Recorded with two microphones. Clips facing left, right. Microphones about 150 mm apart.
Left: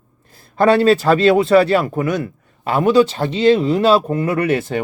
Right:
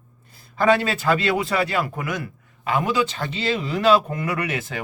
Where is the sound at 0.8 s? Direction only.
30° left (ahead or behind).